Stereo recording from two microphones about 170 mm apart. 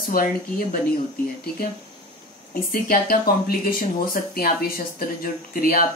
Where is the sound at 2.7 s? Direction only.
60° left (ahead or behind).